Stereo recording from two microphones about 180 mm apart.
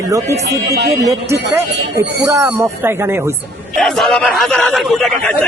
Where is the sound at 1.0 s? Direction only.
15° right (ahead or behind).